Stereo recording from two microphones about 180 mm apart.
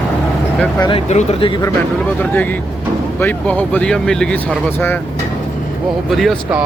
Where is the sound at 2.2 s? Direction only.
10° left (ahead or behind).